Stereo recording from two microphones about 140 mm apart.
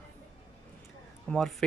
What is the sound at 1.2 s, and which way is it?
Speech, centre (ahead or behind).